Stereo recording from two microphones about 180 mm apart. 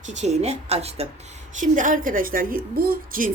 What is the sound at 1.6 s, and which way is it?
A woman's voice, 45° right (ahead or behind).